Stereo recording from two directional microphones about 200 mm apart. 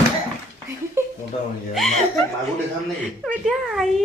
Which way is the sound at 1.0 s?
15° right (ahead or behind).